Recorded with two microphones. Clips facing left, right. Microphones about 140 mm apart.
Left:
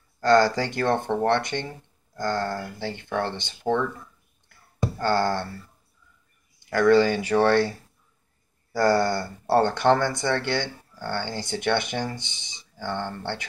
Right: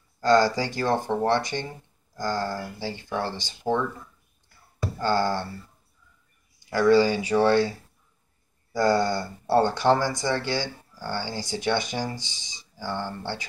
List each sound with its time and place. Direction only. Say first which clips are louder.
0.2 s speech: left 1 dB; 60° left (ahead or behind)
3.6 s speech: left 1 dB; 15° right (ahead or behind)
5.0 s speech: left 1 dB; 60° left (ahead or behind)
6.9 s speech: even; 60° left (ahead or behind)
8.8 s a sound: left 1 dB; 20° right (ahead or behind)
9.5 s speech: left 1 dB; 60° left (ahead or behind)